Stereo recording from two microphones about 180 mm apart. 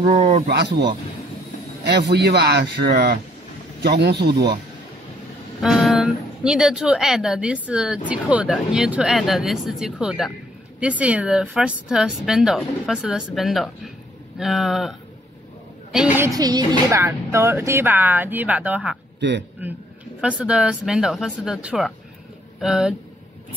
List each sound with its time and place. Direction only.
0.0 s speech: 40° right (ahead or behind)
0.5 s speech: 65° right (ahead or behind)
1.9 s speech: 65° right (ahead or behind)
5.6 s speech: centre (ahead or behind)
16.3 s speech: 25° right (ahead or behind); by 18.9 s 5° right (ahead or behind)
19.1 s a man's voice: 75° right (ahead or behind)
20.2 s speech: 5° right (ahead or behind)